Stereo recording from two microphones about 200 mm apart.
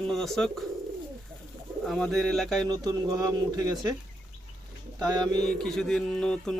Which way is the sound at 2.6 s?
20° right (ahead or behind).